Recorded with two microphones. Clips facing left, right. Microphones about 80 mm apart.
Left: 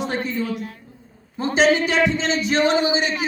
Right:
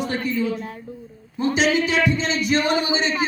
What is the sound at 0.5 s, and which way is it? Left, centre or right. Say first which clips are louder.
Speech: even; right.